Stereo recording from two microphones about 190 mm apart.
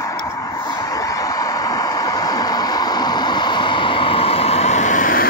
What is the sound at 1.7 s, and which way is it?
Vehicle, 20° left (ahead or behind).